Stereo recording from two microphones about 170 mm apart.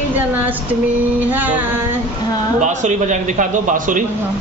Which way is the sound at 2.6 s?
45° right (ahead or behind).